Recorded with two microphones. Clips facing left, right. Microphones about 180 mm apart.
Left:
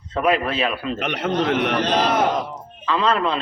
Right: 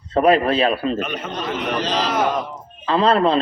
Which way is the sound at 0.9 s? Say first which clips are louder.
Left 4 dB; 70° left (ahead or behind).